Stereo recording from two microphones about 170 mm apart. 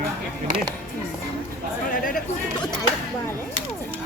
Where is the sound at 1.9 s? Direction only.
55° left (ahead or behind).